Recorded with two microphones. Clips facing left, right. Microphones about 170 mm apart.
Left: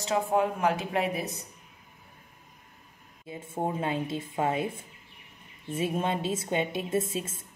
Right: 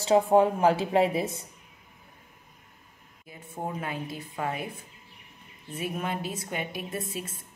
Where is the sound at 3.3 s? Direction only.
25° left (ahead or behind).